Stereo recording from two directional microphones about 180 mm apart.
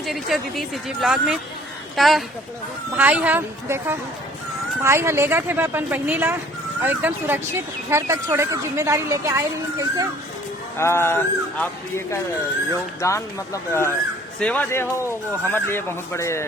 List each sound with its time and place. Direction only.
0.0 s speech: centre (ahead or behind); by 10.1 s 20° right (ahead or behind)
10.8 s speech: 15° left (ahead or behind)